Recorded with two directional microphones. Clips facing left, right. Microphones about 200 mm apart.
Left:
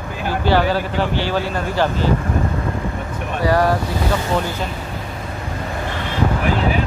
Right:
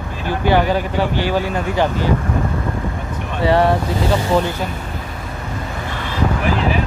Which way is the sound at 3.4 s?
25° right (ahead or behind).